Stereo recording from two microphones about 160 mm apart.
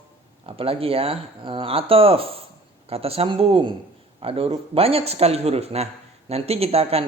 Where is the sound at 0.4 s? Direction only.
35° right (ahead or behind).